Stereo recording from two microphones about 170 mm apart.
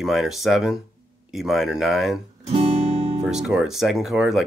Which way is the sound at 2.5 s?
35° right (ahead or behind).